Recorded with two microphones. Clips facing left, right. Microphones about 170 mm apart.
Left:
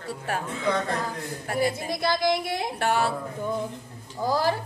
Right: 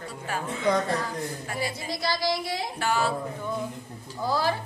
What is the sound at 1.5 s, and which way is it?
A woman's voice, 50° left (ahead or behind).